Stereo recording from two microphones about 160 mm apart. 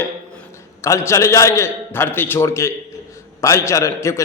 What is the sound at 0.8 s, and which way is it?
A man's voice, 15° left (ahead or behind).